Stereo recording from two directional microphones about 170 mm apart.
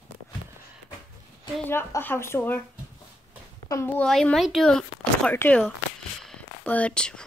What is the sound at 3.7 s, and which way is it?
Speech, 10° left (ahead or behind).